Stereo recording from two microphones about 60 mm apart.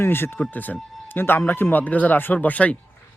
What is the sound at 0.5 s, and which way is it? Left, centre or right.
Speech, left.